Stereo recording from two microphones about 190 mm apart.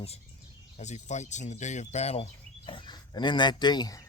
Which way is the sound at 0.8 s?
35° left (ahead or behind).